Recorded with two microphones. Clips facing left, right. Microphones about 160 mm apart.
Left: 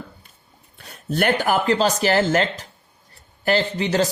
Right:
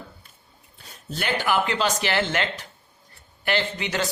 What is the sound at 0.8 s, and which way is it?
Speech, 55° left (ahead or behind).